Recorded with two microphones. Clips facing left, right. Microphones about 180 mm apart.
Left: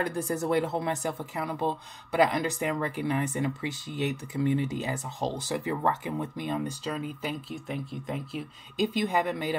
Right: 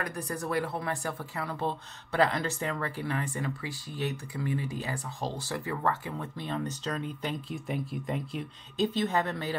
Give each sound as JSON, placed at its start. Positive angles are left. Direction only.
{"t": 0.0, "sound": "speech", "side_deg": 25}